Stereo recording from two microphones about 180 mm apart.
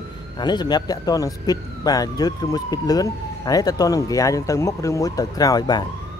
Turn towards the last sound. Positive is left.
turn(degrees=25)  # may be behind; listen again after turning